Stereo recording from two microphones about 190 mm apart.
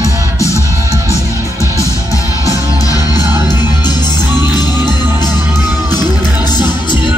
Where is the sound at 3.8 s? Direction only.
20° left (ahead or behind).